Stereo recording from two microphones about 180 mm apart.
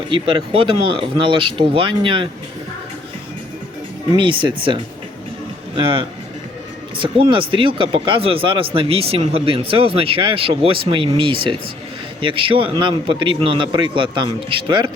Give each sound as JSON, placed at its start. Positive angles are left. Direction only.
{"t": 0.1, "sound": "a man's voice", "side_deg": -25}
{"t": 4.1, "sound": "a man's voice", "side_deg": -25}